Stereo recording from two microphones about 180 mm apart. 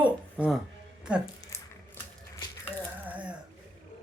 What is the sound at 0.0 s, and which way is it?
Music, 5° right (ahead or behind).